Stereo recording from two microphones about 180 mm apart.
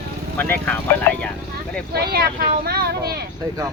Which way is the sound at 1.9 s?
60° right (ahead or behind).